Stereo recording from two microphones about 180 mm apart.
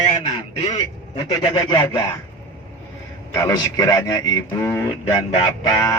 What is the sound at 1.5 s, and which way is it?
Speech, 20° left (ahead or behind).